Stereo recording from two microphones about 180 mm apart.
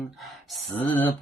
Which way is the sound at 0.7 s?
10° left (ahead or behind).